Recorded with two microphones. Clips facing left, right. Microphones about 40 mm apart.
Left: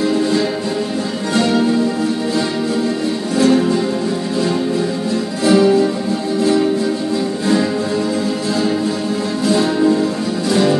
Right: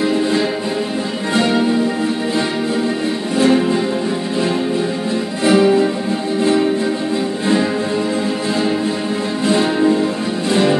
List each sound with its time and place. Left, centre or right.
0.0 s music: right
3.3 s music: right
5.4 s music: right
9.5 s music: right